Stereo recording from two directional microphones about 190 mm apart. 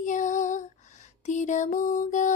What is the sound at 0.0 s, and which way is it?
Female singing, 40° left (ahead or behind).